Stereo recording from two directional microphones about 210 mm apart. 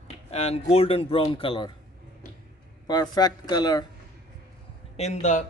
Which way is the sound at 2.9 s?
20° left (ahead or behind).